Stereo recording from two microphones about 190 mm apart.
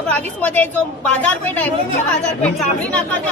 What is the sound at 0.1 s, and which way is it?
Speech, 10° left (ahead or behind).